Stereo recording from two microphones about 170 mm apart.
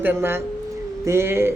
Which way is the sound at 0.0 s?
15° right (ahead or behind).